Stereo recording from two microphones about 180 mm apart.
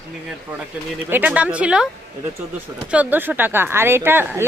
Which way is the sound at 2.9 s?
10° right (ahead or behind).